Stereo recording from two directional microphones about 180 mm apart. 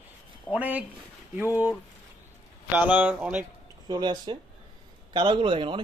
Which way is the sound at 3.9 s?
25° right (ahead or behind).